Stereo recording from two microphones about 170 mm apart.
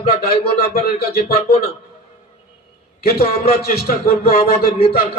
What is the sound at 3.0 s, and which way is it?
Music, 65° left (ahead or behind).